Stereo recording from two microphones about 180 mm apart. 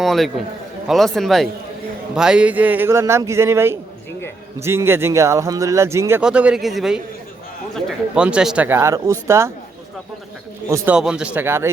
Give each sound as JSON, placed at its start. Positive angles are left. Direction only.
{"t": 0.0, "sound": "a man's voice", "side_deg": 0}
{"t": 10.7, "sound": "a man's voice", "side_deg": -15}
{"t": 10.9, "sound": "a man's voice", "side_deg": -5}